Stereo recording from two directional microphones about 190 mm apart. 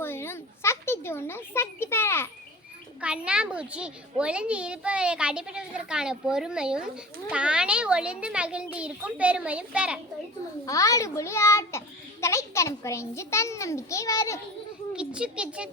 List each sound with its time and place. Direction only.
0.0 s a sound: 10° left (ahead or behind)
3.0 s a child's voice: 5° right (ahead or behind)
10.7 s a child's voice: 15° left (ahead or behind)
14.9 s a child's voice: 5° right (ahead or behind)